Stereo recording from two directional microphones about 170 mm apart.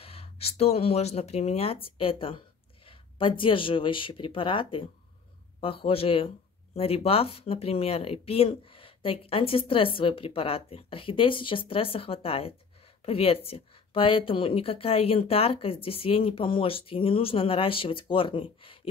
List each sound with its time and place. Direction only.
0.0 s speech: 35° left (ahead or behind)